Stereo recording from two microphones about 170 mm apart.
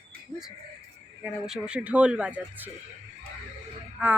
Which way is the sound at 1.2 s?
5° right (ahead or behind).